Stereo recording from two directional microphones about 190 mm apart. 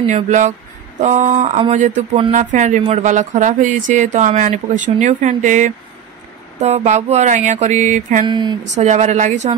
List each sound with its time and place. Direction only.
0.0 s speech: 40° right (ahead or behind)
8.3 s speech: 25° right (ahead or behind)
8.7 s speech: 35° right (ahead or behind)